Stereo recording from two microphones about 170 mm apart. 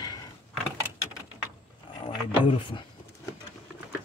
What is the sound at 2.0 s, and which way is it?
Dog, 30° left (ahead or behind).